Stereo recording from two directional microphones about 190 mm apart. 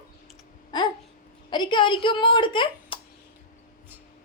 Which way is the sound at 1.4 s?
25° left (ahead or behind).